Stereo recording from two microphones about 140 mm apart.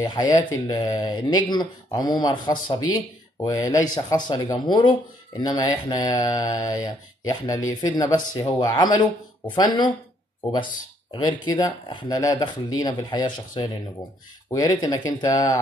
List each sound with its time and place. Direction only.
0.0 s speech: 30° left (ahead or behind)
11.1 s speech: 30° left (ahead or behind)